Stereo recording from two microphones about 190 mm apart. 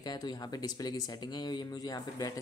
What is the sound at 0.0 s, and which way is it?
Speech, 20° left (ahead or behind).